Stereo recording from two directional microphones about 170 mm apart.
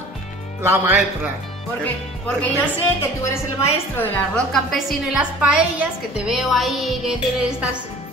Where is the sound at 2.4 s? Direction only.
10° left (ahead or behind).